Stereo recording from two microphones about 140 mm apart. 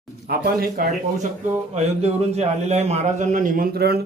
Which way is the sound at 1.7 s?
50° right (ahead or behind).